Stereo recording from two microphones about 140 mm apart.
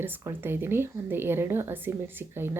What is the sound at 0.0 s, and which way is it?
Speech, 15° right (ahead or behind).